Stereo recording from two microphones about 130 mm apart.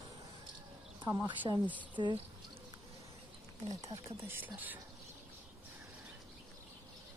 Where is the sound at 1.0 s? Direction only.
20° right (ahead or behind).